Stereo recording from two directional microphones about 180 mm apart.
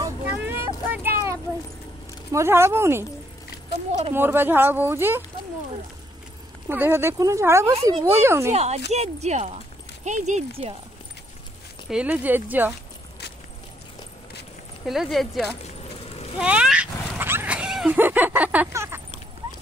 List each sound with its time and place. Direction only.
0.0 s vehicle: 10° right (ahead or behind)
1.0 s a sound: 15° right (ahead or behind)
2.3 s speech: 15° right (ahead or behind)
4.1 s speech: 10° right (ahead or behind)
6.7 s speech: 15° right (ahead or behind)
8.5 s speech: 35° right (ahead or behind)
11.9 s speech: 10° right (ahead or behind)
14.9 s speech: centre (ahead or behind)
15.6 s keys jangling: 35° left (ahead or behind)
16.3 s speech: 5° right (ahead or behind)